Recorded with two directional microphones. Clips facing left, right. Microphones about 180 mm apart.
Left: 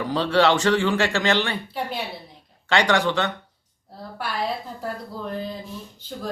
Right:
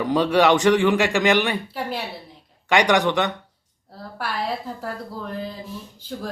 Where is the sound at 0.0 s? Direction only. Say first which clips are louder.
Right 2 dB; 15° right (ahead or behind).